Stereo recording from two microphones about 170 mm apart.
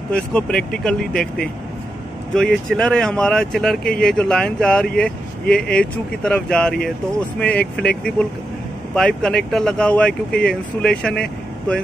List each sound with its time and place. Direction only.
0.1 s speech: 5° left (ahead or behind)
8.9 s speech: 5° left (ahead or behind)